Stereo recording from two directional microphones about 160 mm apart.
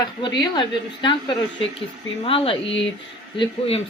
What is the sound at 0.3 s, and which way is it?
Speech, 30° left (ahead or behind).